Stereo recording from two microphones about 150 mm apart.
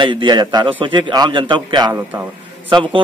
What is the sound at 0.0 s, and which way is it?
A man's voice, 30° right (ahead or behind).